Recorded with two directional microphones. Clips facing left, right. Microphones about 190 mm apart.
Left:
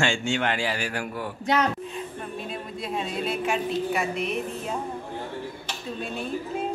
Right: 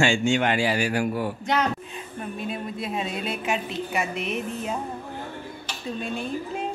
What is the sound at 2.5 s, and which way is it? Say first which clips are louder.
Speech: right 3 dB; 5° right (ahead or behind).